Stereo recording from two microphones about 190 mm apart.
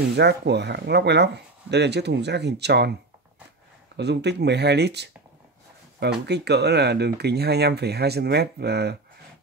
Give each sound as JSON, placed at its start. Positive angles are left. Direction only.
{"t": 0.1, "sound": "speech", "side_deg": -60}
{"t": 3.9, "sound": "speech", "side_deg": -60}
{"t": 6.2, "sound": "speech", "side_deg": -60}